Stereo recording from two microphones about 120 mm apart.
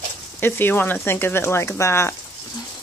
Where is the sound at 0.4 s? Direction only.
20° left (ahead or behind).